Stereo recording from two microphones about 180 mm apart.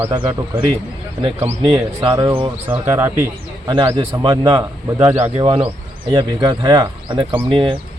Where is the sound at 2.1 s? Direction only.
20° right (ahead or behind).